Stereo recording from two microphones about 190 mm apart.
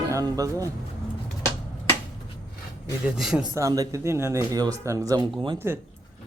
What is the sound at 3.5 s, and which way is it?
Speech, 15° right (ahead or behind).